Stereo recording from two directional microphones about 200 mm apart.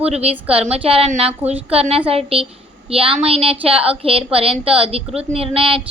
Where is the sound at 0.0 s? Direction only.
30° right (ahead or behind).